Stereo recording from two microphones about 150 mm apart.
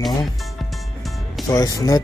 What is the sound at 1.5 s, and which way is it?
Speech, 25° left (ahead or behind).